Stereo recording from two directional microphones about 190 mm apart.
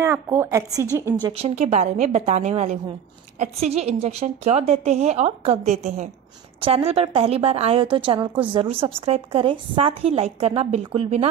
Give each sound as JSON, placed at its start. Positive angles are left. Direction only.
{"t": 0.0, "sound": "a woman's voice", "side_deg": -15}
{"t": 1.2, "sound": "a woman's voice", "side_deg": -30}